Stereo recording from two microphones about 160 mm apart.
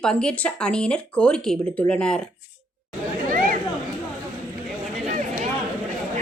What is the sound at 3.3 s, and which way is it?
Chatter, 60° right (ahead or behind).